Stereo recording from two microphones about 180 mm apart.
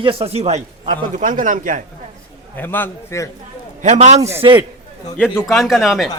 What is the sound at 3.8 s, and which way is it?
Speech, 40° right (ahead or behind).